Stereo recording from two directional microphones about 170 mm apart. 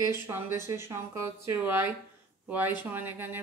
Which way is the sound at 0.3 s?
20° right (ahead or behind).